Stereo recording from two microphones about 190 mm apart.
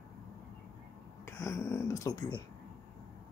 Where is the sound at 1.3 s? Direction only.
15° left (ahead or behind).